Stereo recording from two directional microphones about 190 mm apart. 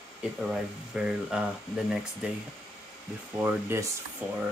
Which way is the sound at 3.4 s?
10° right (ahead or behind).